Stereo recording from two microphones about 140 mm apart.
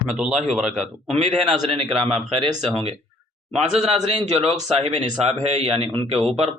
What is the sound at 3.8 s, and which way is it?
Speech, 55° right (ahead or behind).